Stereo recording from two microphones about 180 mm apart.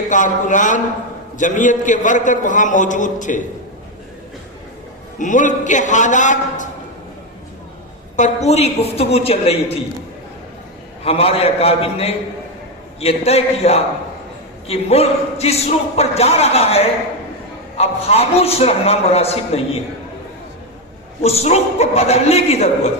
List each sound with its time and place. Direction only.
0.1 s a man's voice: 45° left (ahead or behind)
5.1 s a man's voice: 45° left (ahead or behind)
8.1 s speech: 40° left (ahead or behind)
11.0 s speech: 35° left (ahead or behind)
21.2 s speech: 35° left (ahead or behind)